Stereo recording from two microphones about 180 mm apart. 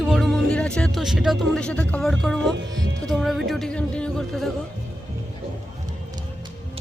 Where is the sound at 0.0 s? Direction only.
Centre (ahead or behind).